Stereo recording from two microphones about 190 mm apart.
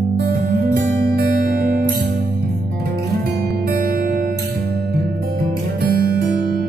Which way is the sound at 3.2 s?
55° right (ahead or behind).